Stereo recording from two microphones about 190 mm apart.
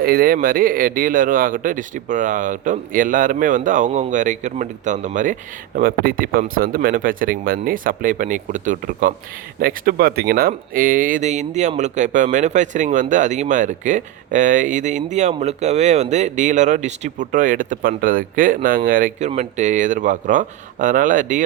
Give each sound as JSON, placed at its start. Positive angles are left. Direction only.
{"t": 0.0, "sound": "a man's voice", "side_deg": -50}